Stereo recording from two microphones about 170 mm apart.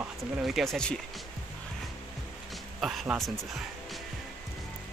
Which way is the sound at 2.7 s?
Centre (ahead or behind).